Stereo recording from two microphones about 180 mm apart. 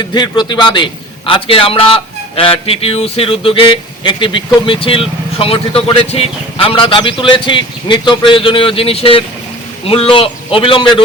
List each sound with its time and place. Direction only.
0.0 s a man's voice: 25° left (ahead or behind)